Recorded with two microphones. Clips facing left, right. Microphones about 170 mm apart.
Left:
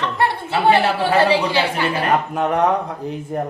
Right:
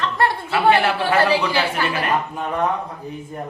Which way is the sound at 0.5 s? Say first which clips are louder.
Left 1 dB; 25° left (ahead or behind).